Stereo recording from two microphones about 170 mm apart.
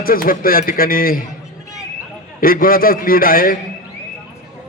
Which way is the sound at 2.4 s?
55° left (ahead or behind).